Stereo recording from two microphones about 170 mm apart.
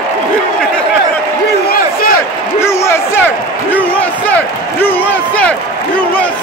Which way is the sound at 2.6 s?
15° left (ahead or behind).